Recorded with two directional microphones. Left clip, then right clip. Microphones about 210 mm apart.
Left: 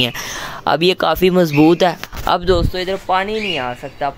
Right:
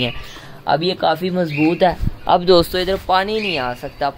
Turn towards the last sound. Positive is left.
turn(degrees=-5)  # may be behind; listen again after turning